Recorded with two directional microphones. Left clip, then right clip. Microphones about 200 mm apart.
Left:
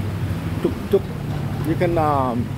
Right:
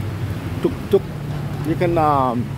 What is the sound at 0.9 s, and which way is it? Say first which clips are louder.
Speech: right 2 dB; 25° right (ahead or behind).